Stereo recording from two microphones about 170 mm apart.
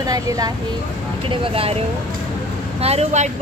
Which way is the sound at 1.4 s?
35° right (ahead or behind).